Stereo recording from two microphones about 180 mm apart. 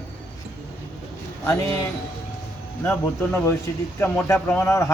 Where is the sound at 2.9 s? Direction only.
10° left (ahead or behind).